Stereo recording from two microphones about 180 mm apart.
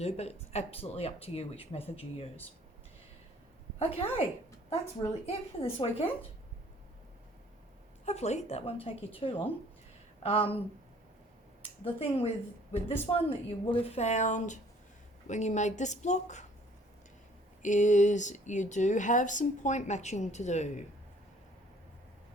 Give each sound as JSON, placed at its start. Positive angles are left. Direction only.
{"t": 0.0, "sound": "speech", "side_deg": 35}
{"t": 3.8, "sound": "a woman's voice", "side_deg": 35}
{"t": 8.0, "sound": "speech", "side_deg": 35}
{"t": 11.9, "sound": "speech", "side_deg": 35}
{"t": 17.6, "sound": "speech", "side_deg": 45}